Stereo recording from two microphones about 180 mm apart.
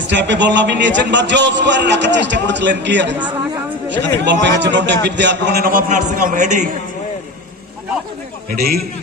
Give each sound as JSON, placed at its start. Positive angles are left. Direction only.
{"t": 0.1, "sound": "a man's voice", "side_deg": -80}
{"t": 8.5, "sound": "a man's voice", "side_deg": -55}